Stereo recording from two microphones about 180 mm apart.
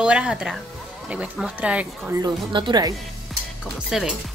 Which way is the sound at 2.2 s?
25° right (ahead or behind).